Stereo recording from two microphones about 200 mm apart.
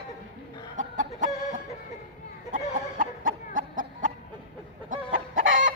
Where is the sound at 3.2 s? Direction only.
45° right (ahead or behind).